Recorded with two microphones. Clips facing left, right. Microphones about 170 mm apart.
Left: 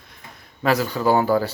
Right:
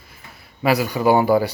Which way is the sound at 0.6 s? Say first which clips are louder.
Right 2 dB; 10° right (ahead or behind).